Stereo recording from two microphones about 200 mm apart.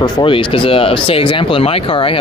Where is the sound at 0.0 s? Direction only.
25° left (ahead or behind).